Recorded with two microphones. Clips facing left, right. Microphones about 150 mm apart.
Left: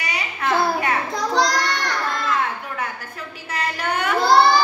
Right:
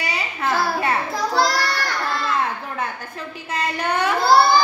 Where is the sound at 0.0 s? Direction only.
30° right (ahead or behind).